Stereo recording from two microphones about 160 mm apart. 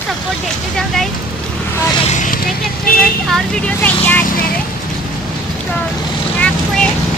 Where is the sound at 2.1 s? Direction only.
50° left (ahead or behind).